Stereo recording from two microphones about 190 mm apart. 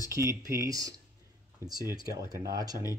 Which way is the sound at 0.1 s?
15° right (ahead or behind).